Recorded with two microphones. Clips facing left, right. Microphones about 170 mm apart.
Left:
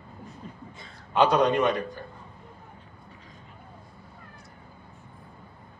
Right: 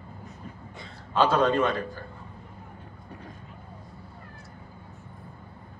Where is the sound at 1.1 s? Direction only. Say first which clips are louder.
Left 1 dB; 20° left (ahead or behind).